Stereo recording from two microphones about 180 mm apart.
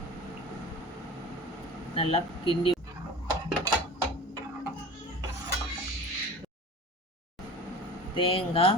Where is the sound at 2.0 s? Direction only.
30° left (ahead or behind).